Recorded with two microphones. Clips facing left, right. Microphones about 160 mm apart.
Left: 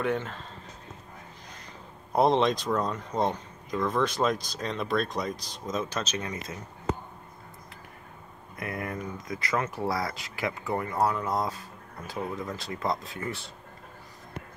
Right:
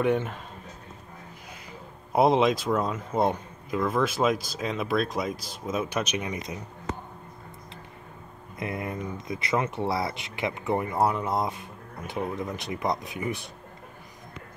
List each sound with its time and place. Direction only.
0.0 s speech: 15° right (ahead or behind)
2.1 s speech: 5° right (ahead or behind)
8.5 s speech: 20° right (ahead or behind)